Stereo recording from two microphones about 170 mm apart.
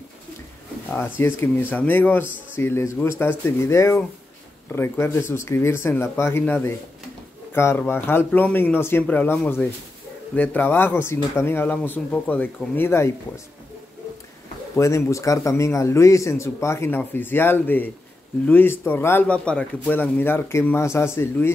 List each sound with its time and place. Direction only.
0.9 s speech: 10° left (ahead or behind)
14.8 s speech: 15° left (ahead or behind)